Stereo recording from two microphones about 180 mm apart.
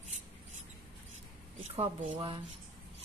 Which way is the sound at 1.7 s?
30° right (ahead or behind).